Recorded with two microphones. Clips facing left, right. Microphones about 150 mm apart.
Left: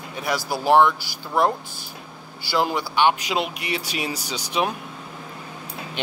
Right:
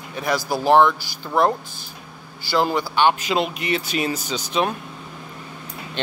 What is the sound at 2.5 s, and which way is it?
Speech, 15° left (ahead or behind).